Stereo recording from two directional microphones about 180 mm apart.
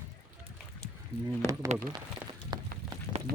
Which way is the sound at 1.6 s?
15° right (ahead or behind).